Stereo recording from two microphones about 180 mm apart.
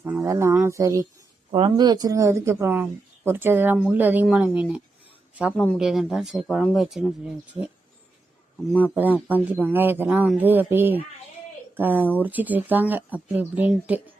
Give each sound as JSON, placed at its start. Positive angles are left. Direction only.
{"t": 0.0, "sound": "speech", "side_deg": -15}
{"t": 1.5, "sound": "speech", "side_deg": -30}
{"t": 8.8, "sound": "speech", "side_deg": -10}